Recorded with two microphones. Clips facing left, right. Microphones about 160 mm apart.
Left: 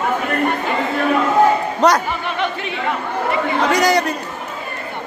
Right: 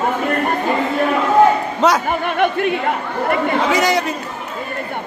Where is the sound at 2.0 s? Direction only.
50° right (ahead or behind).